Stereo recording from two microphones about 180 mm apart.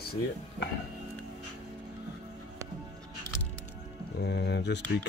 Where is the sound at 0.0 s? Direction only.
60° left (ahead or behind).